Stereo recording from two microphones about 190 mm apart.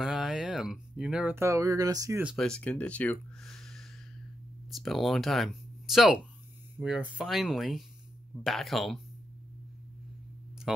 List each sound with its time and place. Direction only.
0.0 s speech: 5° right (ahead or behind)
2.2 s speech: 5° left (ahead or behind)